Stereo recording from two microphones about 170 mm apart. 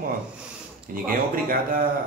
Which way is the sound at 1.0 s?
55° right (ahead or behind).